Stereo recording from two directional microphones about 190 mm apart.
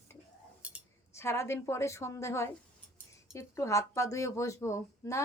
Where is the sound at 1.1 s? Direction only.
15° left (ahead or behind).